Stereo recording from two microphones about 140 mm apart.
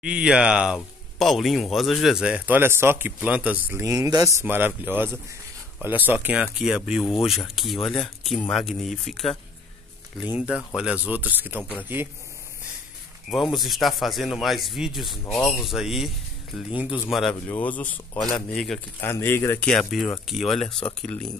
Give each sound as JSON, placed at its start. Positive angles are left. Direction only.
{"t": 0.0, "sound": "speech", "side_deg": -5}
{"t": 3.8, "sound": "speech", "side_deg": -25}
{"t": 4.4, "sound": "speech", "side_deg": -15}
{"t": 13.3, "sound": "speech", "side_deg": 0}
{"t": 15.2, "sound": "speech", "side_deg": 10}
{"t": 15.6, "sound": "speech", "side_deg": 0}
{"t": 17.5, "sound": "speech", "side_deg": 10}
{"t": 18.9, "sound": "speech", "side_deg": 15}
{"t": 19.7, "sound": "speech", "side_deg": 5}